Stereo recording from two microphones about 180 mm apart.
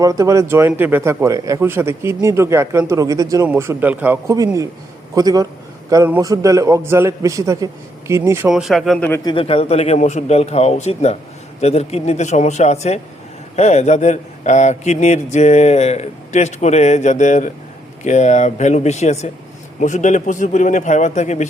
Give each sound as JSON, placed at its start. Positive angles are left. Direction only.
{"t": 0.0, "sound": "a man's voice", "side_deg": -20}
{"t": 9.2, "sound": "a man's voice", "side_deg": 30}